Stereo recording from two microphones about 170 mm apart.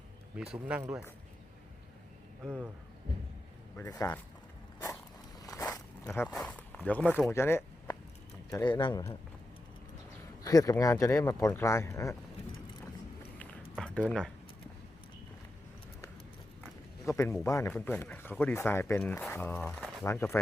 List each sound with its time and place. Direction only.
0.3 s speech: 5° right (ahead or behind)
3.8 s speech: 15° left (ahead or behind)
5.4 s walk: 20° left (ahead or behind)
6.1 s speech: 5° left (ahead or behind); by 9.1 s 25° left (ahead or behind)
10.4 s speech: 20° left (ahead or behind)
13.7 s a sound: 5° left (ahead or behind)
17.1 s speech: 15° left (ahead or behind)
20.1 s speech: 15° left (ahead or behind)